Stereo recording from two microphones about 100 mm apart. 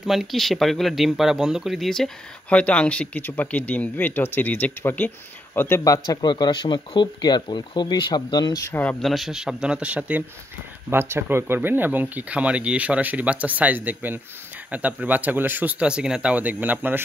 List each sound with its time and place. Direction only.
0.0 s speech: centre (ahead or behind); by 5.9 s 25° left (ahead or behind)
6.0 s speech: 45° left (ahead or behind)
9.0 s speech: centre (ahead or behind); by 17.0 s 15° right (ahead or behind)